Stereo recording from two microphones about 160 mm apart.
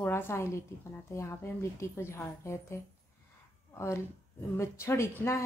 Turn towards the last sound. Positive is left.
turn(degrees=15)  # may be behind; listen again after turning